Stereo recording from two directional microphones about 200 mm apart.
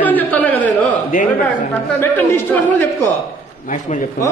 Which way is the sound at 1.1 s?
40° left (ahead or behind).